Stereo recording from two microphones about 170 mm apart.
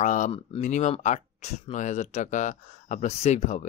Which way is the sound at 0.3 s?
40° left (ahead or behind).